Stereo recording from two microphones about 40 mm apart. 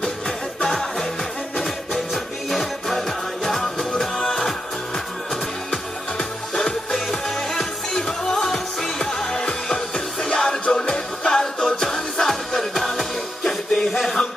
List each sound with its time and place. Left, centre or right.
0.6 s music: centre
2.5 s music: centre
6.1 s music: centre